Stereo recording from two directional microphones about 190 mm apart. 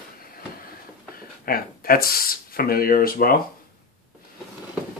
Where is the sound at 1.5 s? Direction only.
50° left (ahead or behind).